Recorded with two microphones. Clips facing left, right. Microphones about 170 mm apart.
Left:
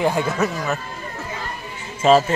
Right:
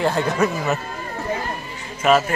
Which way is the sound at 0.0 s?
10° left (ahead or behind).